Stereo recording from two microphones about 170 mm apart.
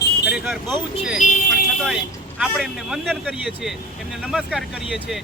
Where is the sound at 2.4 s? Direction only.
Centre (ahead or behind).